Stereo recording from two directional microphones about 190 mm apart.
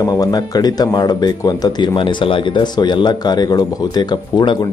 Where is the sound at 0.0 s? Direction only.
20° left (ahead or behind).